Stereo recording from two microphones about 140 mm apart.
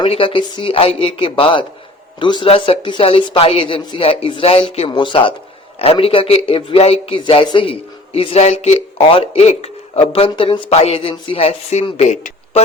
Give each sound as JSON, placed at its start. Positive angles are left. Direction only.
{"t": 0.0, "sound": "a man's voice", "side_deg": 40}
{"t": 10.7, "sound": "a man's voice", "side_deg": 50}